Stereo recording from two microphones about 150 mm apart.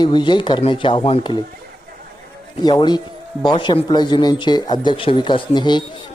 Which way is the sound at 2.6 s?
30° left (ahead or behind).